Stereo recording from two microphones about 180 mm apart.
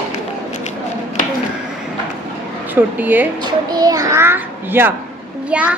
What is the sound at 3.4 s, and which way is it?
A child's voice, 20° right (ahead or behind).